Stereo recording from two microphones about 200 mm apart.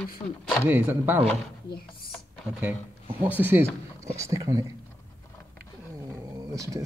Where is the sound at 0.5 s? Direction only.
10° right (ahead or behind).